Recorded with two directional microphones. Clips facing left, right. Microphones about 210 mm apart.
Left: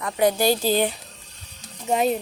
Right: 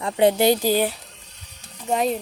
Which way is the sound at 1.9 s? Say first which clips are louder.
Left 1 dB; centre (ahead or behind).